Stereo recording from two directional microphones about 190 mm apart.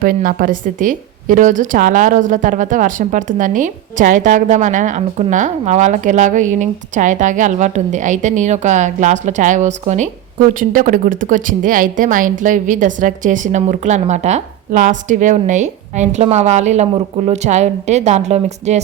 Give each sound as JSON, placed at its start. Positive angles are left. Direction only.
{"t": 0.0, "sound": "speech", "side_deg": -45}